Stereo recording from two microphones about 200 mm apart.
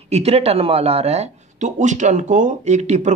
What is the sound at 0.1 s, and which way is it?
Speech, 30° right (ahead or behind).